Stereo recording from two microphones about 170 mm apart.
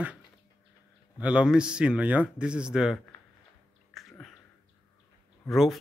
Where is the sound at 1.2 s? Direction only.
5° right (ahead or behind).